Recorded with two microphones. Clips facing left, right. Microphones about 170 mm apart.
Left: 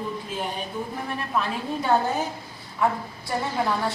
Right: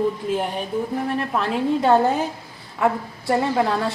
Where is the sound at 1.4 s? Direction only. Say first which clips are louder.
Right 6 dB; 85° right.